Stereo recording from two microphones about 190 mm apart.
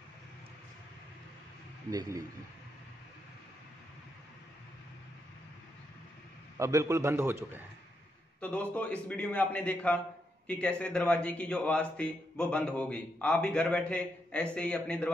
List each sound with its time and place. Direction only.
1.9 s speech: 20° right (ahead or behind)
6.6 s a man's voice: 15° right (ahead or behind)
8.4 s a man's voice: 10° left (ahead or behind)